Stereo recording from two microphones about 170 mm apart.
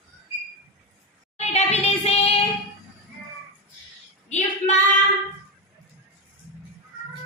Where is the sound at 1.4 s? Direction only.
40° left (ahead or behind).